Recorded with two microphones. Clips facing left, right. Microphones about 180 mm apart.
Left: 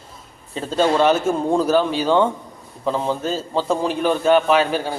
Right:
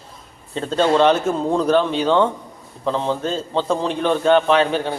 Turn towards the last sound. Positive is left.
turn(degrees=5)  # may be behind; listen again after turning